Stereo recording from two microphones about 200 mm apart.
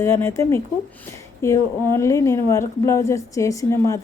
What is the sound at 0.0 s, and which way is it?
A woman's voice, 10° left (ahead or behind).